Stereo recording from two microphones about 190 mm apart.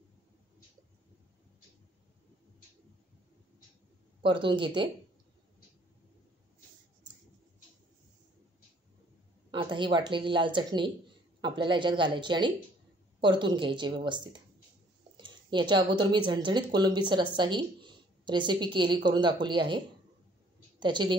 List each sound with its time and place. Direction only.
4.2 s speech: 25° right (ahead or behind)
9.5 s speech: 25° right (ahead or behind)
20.8 s speech: 25° right (ahead or behind)